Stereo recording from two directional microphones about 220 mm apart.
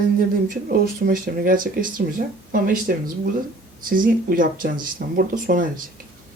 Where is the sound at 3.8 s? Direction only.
40° right (ahead or behind).